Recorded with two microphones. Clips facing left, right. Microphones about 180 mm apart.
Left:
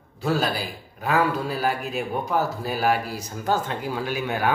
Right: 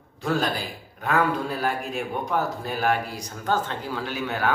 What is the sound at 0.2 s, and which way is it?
A man's voice, 5° left (ahead or behind).